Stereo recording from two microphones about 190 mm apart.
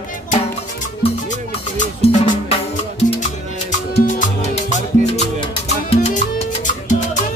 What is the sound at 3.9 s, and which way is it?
Music, 50° left (ahead or behind).